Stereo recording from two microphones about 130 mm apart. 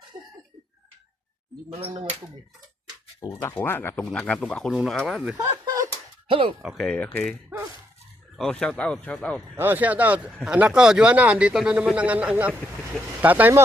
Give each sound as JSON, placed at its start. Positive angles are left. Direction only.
{"t": 1.7, "sound": "speech", "side_deg": -40}
{"t": 3.4, "sound": "speech", "side_deg": 15}
{"t": 5.4, "sound": "a sound", "side_deg": -30}
{"t": 6.2, "sound": "speech", "side_deg": -45}
{"t": 6.6, "sound": "speech", "side_deg": -5}
{"t": 6.8, "sound": "speech", "side_deg": 10}
{"t": 8.4, "sound": "speech", "side_deg": 5}
{"t": 9.6, "sound": "speech", "side_deg": -15}